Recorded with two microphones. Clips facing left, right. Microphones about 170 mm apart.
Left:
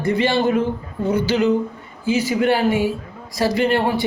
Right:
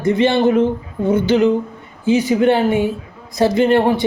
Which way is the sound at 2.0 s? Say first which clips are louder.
Right 4 dB; 20° right (ahead or behind).